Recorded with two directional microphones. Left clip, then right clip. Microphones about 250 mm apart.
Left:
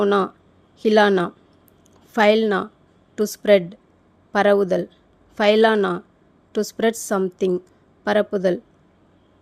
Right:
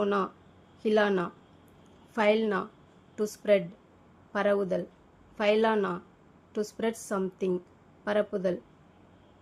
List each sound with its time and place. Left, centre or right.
0.0 s a woman's voice: left